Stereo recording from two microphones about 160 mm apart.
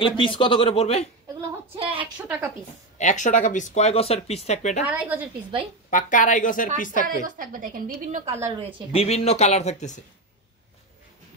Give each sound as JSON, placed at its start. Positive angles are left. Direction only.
{"t": 0.0, "sound": "speech", "side_deg": 35}
{"t": 1.8, "sound": "a sound", "side_deg": -35}
{"t": 2.1, "sound": "a woman's voice", "side_deg": -10}
{"t": 3.0, "sound": "speech", "side_deg": 50}
{"t": 4.8, "sound": "a woman's voice", "side_deg": -10}
{"t": 5.9, "sound": "speech", "side_deg": 55}
{"t": 7.2, "sound": "a woman's voice", "side_deg": -60}
{"t": 8.5, "sound": "speech", "side_deg": -35}
{"t": 8.9, "sound": "speech", "side_deg": 40}